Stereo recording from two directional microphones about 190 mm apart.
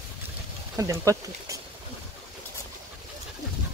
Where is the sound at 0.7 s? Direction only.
15° right (ahead or behind).